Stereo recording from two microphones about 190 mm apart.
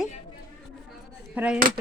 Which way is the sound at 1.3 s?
5° right (ahead or behind).